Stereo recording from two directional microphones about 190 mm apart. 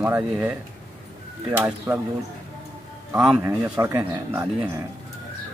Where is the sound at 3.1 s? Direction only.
5° right (ahead or behind).